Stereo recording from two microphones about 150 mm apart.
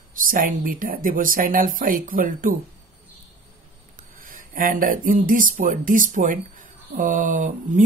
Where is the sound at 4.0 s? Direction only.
65° right (ahead or behind).